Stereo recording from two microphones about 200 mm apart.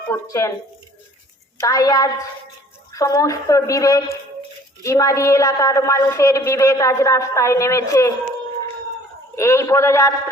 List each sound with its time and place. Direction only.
0.1 s a woman's voice: 15° left (ahead or behind)
1.6 s a woman's voice: 15° left (ahead or behind)
9.3 s a woman's voice: 15° left (ahead or behind)